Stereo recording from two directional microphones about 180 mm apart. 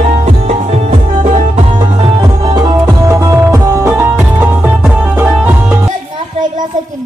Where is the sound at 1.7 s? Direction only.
25° right (ahead or behind); by 5.9 s 10° right (ahead or behind).